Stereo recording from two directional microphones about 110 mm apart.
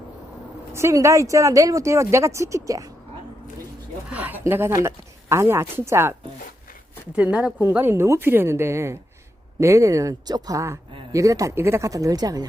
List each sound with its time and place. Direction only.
0.7 s speech: 25° right (ahead or behind)
4.1 s speech: 15° right (ahead or behind)
7.2 s speech: 10° right (ahead or behind); by 12.5 s 35° right (ahead or behind)